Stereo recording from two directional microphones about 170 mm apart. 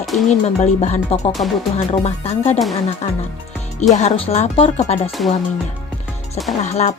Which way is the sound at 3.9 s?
40° left (ahead or behind).